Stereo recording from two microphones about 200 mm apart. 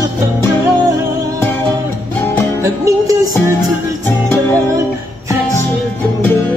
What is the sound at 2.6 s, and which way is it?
Music, 15° right (ahead or behind).